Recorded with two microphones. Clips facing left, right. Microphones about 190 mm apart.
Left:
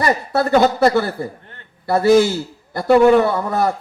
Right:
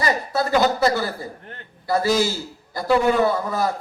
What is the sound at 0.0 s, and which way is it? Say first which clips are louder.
A man's voice: left 4 dB; 60° left (ahead or behind).